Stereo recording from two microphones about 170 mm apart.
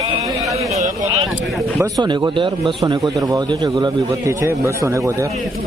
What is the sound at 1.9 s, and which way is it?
Speech, 25° right (ahead or behind).